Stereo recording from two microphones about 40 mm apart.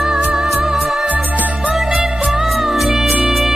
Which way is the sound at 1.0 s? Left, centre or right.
Right.